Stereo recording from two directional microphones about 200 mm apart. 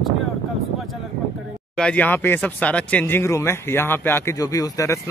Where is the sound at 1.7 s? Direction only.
5° left (ahead or behind).